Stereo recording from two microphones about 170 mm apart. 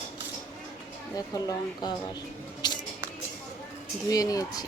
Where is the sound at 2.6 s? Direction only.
25° left (ahead or behind).